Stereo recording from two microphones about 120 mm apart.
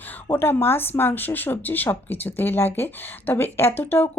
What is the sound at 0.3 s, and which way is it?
Speech, 20° left (ahead or behind).